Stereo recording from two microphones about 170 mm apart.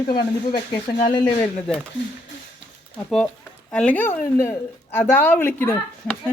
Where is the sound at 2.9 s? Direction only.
5° left (ahead or behind).